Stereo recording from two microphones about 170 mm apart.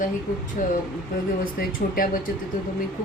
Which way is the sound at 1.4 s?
55° left (ahead or behind).